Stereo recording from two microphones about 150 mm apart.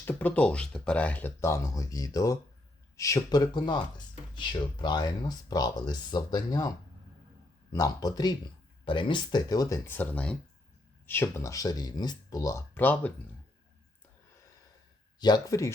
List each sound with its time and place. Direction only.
0.0 s speech: 10° left (ahead or behind)
15.2 s speech: 25° left (ahead or behind)